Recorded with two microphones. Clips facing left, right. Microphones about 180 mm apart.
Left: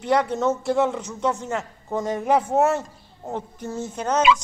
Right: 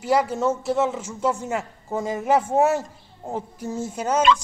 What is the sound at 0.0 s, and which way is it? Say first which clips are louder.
A man's voice: even; 5° right (ahead or behind).